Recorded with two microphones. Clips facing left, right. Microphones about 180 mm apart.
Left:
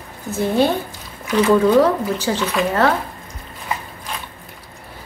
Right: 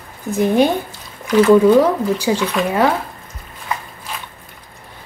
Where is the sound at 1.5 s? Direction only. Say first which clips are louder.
Right 2 dB; 15° right (ahead or behind).